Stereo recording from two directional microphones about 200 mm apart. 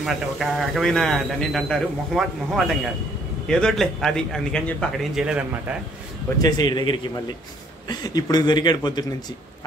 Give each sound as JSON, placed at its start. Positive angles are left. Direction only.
{"t": 0.0, "sound": "speech", "side_deg": 0}
{"t": 6.4, "sound": "speech", "side_deg": 20}